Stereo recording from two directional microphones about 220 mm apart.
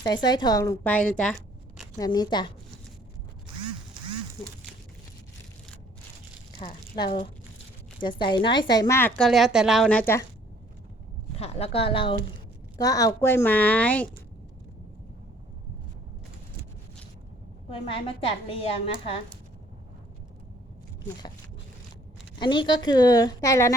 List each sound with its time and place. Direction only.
0.0 s a woman's voice: 20° left (ahead or behind)
2.0 s a woman's voice: 20° left (ahead or behind)
6.6 s speech: 30° left (ahead or behind)
6.9 s a woman's voice: 20° left (ahead or behind)
11.3 s a woman's voice: 30° left (ahead or behind); by 14.1 s 5° left (ahead or behind)
17.7 s a woman's voice: 25° left (ahead or behind)
22.4 s a woman's voice: 20° left (ahead or behind)